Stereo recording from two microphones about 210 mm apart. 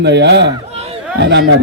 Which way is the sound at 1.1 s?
55° right (ahead or behind).